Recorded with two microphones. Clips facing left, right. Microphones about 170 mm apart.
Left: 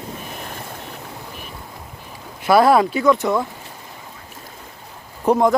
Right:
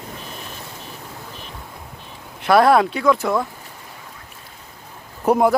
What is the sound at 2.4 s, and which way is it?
Speech, centre (ahead or behind).